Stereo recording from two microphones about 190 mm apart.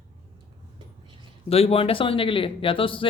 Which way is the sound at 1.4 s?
30° left (ahead or behind).